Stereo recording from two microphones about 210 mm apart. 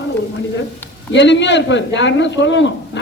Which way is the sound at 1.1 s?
60° left (ahead or behind).